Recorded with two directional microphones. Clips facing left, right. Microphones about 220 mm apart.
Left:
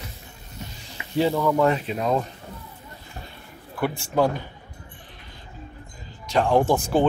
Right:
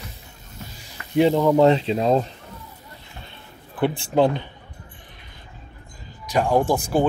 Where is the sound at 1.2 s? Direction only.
20° right (ahead or behind).